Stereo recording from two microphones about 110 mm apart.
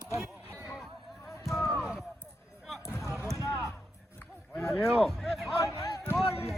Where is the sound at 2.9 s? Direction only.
25° left (ahead or behind).